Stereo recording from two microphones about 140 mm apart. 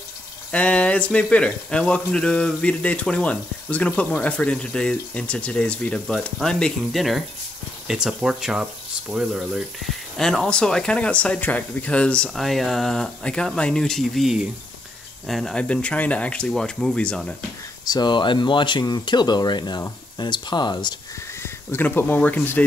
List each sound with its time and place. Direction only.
0.5 s speech: 10° left (ahead or behind)
17.8 s speech: 30° left (ahead or behind)
21.4 s speech: 15° left (ahead or behind)